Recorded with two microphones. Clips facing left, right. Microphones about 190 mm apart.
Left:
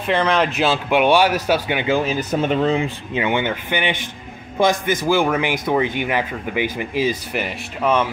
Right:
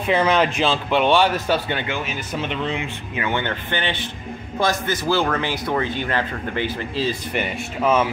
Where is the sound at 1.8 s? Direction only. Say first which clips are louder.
Left 8 dB; 35° left (ahead or behind).